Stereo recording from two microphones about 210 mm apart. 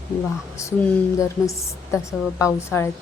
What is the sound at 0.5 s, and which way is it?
A woman's voice, 15° left (ahead or behind).